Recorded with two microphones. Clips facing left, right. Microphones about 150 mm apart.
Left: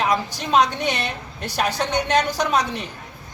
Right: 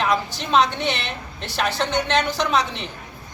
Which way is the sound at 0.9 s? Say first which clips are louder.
Left 2 dB; 45° left (ahead or behind).